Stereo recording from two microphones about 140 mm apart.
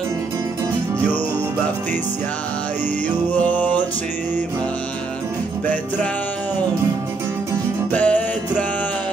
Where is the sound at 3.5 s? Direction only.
10° left (ahead or behind).